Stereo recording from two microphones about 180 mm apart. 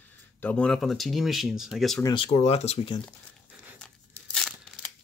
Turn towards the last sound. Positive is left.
turn(degrees=5)  # may be behind; listen again after turning